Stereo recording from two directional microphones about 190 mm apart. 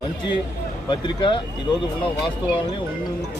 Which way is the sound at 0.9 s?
25° left (ahead or behind).